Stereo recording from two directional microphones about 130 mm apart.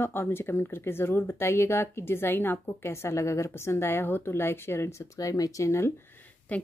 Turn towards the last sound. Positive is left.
turn(degrees=10)  # may be behind; listen again after turning